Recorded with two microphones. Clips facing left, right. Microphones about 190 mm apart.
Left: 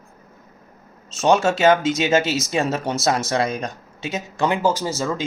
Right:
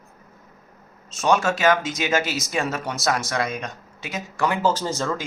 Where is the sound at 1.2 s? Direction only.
25° left (ahead or behind); by 5.1 s 10° left (ahead or behind).